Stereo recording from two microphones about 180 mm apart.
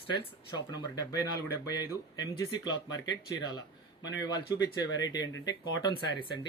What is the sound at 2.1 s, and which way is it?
Speech, 25° left (ahead or behind).